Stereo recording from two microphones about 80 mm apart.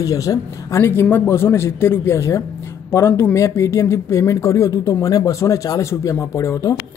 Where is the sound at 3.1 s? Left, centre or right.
Left.